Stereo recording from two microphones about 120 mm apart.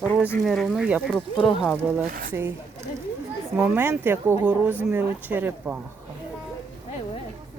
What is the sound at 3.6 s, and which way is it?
Speech, 15° right (ahead or behind).